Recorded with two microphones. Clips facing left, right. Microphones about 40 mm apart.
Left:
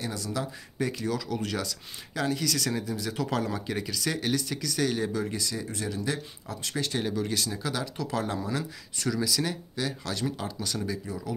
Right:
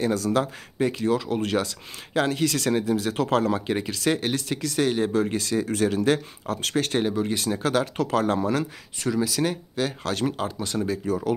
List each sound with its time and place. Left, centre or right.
0.0 s speech: right
0.7 s speech: right
5.3 s speech: right
6.7 s speech: right
7.0 s speech: right
7.6 s speech: right
8.9 s speech: right